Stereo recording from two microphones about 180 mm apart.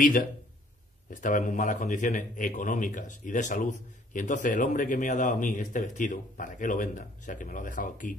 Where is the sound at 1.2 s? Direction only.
45° left (ahead or behind).